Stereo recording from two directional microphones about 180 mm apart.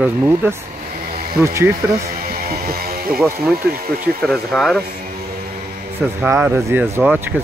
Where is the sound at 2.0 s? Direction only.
55° right (ahead or behind).